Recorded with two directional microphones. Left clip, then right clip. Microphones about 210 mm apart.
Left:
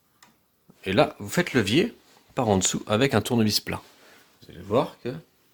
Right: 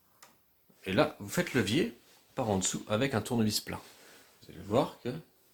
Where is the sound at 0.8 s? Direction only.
50° left (ahead or behind).